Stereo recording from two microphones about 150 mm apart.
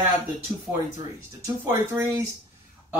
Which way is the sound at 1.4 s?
20° right (ahead or behind).